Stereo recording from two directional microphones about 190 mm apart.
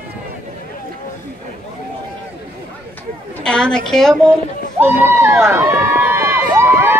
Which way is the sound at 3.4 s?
5° left (ahead or behind).